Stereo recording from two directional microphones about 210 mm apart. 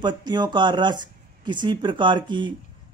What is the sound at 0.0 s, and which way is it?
A man's voice, 20° right (ahead or behind).